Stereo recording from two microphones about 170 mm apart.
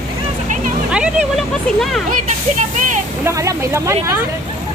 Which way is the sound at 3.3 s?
15° right (ahead or behind).